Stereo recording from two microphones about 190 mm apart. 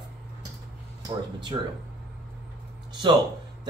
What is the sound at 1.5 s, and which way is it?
Speech, 25° right (ahead or behind).